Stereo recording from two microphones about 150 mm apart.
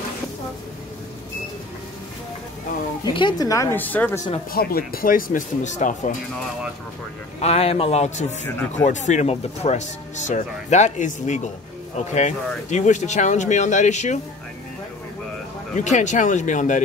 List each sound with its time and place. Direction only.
3.1 s speech: 30° left (ahead or behind); by 4.2 s 10° left (ahead or behind)
4.5 s speech: 85° left; by 6.1 s 60° left (ahead or behind)
7.3 s speech: 45° left (ahead or behind)
15.7 s speech: 50° left (ahead or behind)